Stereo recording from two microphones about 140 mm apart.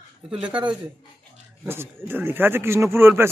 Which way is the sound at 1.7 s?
15° right (ahead or behind).